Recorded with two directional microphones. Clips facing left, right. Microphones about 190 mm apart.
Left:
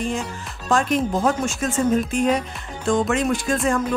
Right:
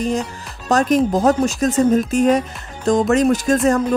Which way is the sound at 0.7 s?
40° right (ahead or behind).